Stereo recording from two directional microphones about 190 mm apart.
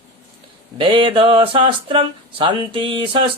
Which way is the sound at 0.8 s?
25° right (ahead or behind).